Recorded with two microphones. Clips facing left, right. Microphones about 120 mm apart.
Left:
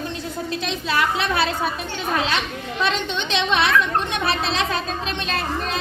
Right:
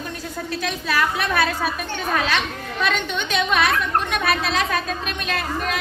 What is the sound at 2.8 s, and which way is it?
A woman's voice, 30° left (ahead or behind).